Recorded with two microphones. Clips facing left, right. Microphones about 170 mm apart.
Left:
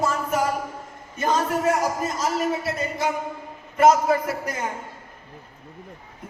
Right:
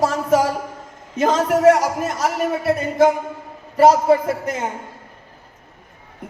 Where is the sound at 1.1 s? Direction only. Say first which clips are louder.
Right 6 dB; 90° right; by 2.4 s 65° right (ahead or behind).